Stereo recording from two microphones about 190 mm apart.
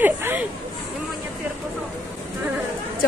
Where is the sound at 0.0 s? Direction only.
10° right (ahead or behind).